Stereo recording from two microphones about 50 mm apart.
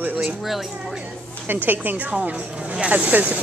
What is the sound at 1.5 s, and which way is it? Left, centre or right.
Speech, right.